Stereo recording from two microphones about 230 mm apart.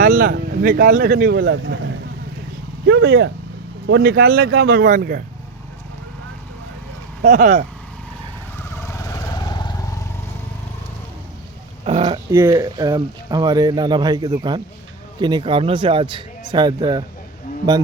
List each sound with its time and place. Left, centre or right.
0.0 s speech: right
1.4 s speech: right
2.8 s speech: right
7.2 s speech: right
8.5 s vehicle: centre
11.9 s speech: right